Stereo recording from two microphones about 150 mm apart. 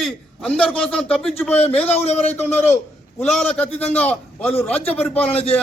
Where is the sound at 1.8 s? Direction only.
45° left (ahead or behind).